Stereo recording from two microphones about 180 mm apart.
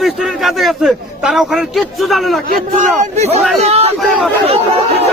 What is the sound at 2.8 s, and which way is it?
Speech, 40° right (ahead or behind).